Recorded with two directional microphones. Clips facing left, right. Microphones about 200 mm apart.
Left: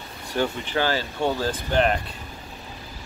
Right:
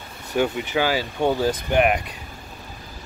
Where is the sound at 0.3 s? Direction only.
10° right (ahead or behind).